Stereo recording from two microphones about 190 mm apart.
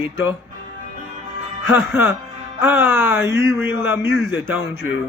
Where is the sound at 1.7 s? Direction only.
10° right (ahead or behind).